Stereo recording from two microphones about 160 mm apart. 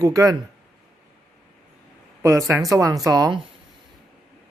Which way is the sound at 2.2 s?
15° right (ahead or behind).